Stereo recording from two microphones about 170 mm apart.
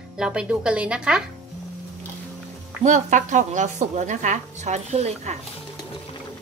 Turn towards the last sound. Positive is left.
turn(degrees=-40)  # may be behind; listen again after turning